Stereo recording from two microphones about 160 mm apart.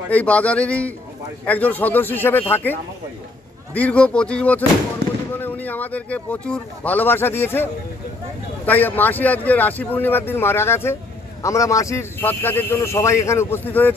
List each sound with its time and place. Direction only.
0.1 s speech: 10° left (ahead or behind)